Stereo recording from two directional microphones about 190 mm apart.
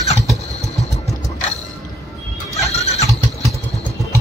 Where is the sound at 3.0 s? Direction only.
15° right (ahead or behind).